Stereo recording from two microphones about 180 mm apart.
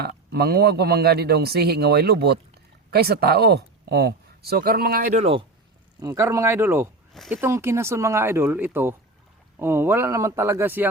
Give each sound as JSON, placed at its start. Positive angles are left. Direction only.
{"t": 0.0, "sound": "speech", "side_deg": -65}
{"t": 6.0, "sound": "speech", "side_deg": -15}